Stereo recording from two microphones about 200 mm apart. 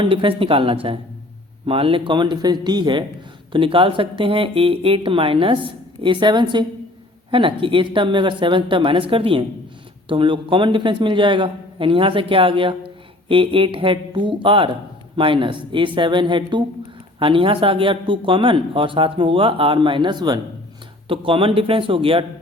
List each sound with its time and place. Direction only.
0.0 s a man's voice: 25° right (ahead or behind)